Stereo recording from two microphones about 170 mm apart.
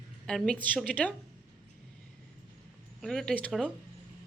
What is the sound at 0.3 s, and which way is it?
Speech, 5° left (ahead or behind).